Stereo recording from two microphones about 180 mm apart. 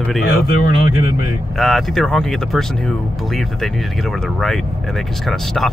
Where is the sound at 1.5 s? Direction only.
Centre (ahead or behind).